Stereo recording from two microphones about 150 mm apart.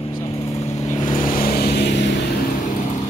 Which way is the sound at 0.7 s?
50° left (ahead or behind).